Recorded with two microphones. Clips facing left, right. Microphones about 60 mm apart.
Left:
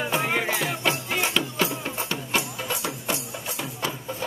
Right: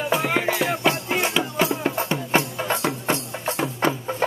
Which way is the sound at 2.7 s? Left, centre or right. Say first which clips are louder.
Right 6 dB; right.